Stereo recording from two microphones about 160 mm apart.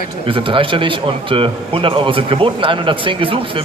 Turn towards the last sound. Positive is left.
turn(degrees=-35)  # may be behind; listen again after turning